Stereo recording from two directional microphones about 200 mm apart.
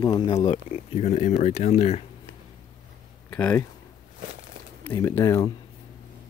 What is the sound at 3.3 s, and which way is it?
Speech, 5° left (ahead or behind).